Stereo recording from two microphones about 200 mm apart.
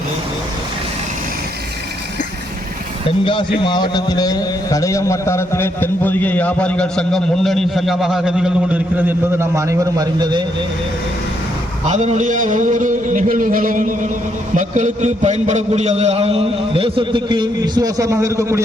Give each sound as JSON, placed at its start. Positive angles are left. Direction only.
{"t": 3.6, "sound": "a man's voice", "side_deg": 20}
{"t": 11.9, "sound": "a man's voice", "side_deg": -35}